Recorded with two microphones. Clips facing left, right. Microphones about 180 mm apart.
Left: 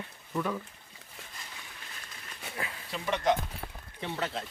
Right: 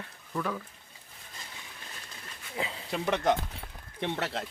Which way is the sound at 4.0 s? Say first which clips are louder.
Right 2 dB; 70° right (ahead or behind).